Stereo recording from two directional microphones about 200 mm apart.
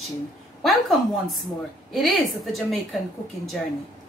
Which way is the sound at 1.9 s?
Centre (ahead or behind).